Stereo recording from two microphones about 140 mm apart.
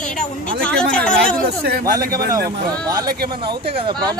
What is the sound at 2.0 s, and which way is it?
Speech, 90° right.